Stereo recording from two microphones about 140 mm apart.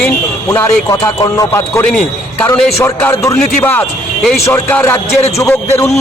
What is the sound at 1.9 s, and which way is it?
Speech, 5° left (ahead or behind).